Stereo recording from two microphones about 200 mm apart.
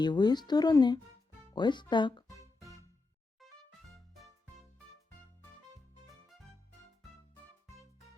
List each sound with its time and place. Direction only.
0.0 s speech: 20° left (ahead or behind)
3.4 s music: centre (ahead or behind)